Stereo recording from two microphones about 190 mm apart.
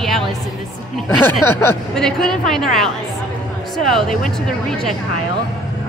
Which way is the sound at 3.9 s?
Centre (ahead or behind).